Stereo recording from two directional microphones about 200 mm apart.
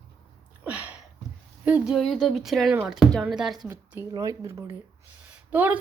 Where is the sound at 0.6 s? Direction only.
5° right (ahead or behind).